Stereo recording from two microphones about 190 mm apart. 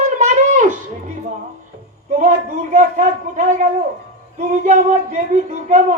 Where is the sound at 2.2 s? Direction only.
40° right (ahead or behind).